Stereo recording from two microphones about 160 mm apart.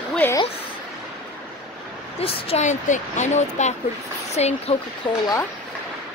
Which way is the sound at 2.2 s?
35° left (ahead or behind).